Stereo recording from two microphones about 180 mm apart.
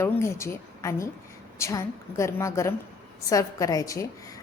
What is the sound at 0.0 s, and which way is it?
A woman's voice, 15° left (ahead or behind).